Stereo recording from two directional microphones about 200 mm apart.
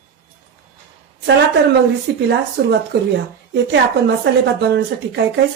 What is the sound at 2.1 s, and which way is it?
A woman's voice, 55° right (ahead or behind).